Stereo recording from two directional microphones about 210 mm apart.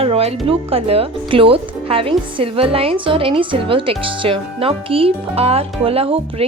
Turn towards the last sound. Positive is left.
turn(degrees=-25)  # may be behind; listen again after turning